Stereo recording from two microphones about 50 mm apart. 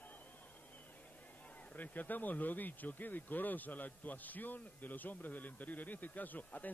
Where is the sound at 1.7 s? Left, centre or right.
Left.